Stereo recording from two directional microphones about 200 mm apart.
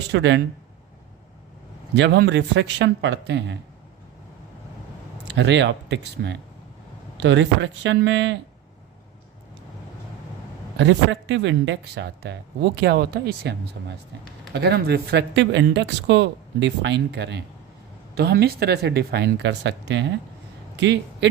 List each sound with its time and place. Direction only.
0.1 s speech: 60° right (ahead or behind)
2.0 s speech: 60° right (ahead or behind)
5.4 s speech: 60° right (ahead or behind)
10.8 s speech: 65° right (ahead or behind)